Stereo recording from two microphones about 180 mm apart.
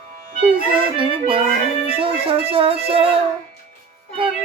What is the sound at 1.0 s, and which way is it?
Music, 30° right (ahead or behind).